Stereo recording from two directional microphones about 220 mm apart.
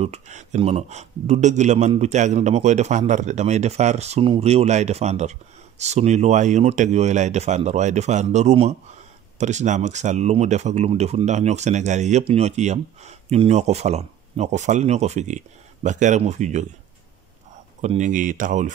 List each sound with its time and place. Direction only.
0.0 s a man's voice: 30° right (ahead or behind)
17.8 s a man's voice: 35° right (ahead or behind)